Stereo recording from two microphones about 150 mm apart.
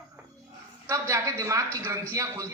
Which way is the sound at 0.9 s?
20° right (ahead or behind).